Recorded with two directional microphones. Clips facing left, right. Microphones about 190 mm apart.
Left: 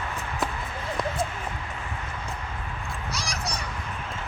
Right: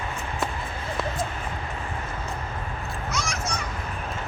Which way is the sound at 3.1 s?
35° left (ahead or behind).